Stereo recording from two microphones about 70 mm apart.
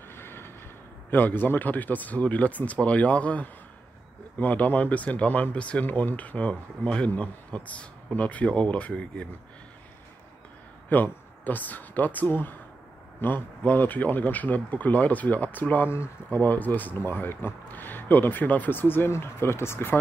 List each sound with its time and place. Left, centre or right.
0.1 s train: left
1.1 s speech: left
10.9 s speech: left